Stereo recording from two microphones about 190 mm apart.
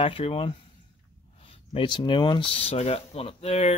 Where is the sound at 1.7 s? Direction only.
25° left (ahead or behind).